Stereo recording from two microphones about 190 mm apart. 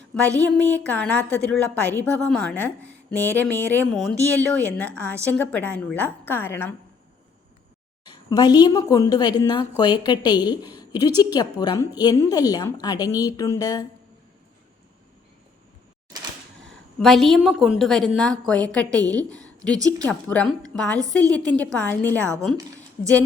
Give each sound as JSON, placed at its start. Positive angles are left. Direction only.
{"t": 0.1, "sound": "a woman's voice", "side_deg": 10}
{"t": 8.0, "sound": "a woman's voice", "side_deg": 20}
{"t": 17.0, "sound": "a woman's voice", "side_deg": 0}